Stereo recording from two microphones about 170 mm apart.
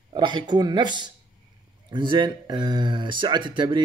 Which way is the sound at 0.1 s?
25° right (ahead or behind).